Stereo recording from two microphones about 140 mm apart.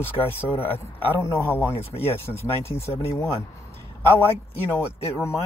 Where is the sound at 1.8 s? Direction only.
45° left (ahead or behind).